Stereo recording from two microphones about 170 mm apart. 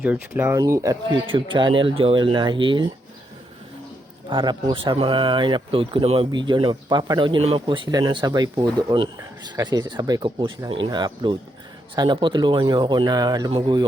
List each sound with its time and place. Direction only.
0.0 s speech: 10° right (ahead or behind)
1.1 s speech: 30° right (ahead or behind)
4.3 s speech: 25° right (ahead or behind)